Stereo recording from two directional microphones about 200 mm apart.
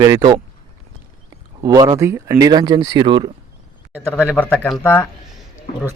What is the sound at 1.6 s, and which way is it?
Speech, 20° right (ahead or behind).